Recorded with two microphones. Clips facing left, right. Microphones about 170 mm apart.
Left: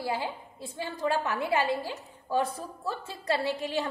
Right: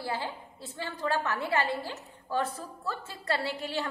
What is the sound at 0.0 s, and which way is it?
A woman's voice, 15° left (ahead or behind).